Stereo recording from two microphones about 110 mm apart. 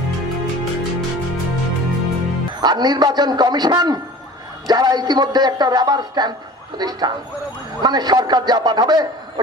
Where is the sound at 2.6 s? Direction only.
40° right (ahead or behind).